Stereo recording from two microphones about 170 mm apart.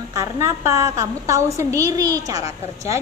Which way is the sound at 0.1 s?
20° right (ahead or behind).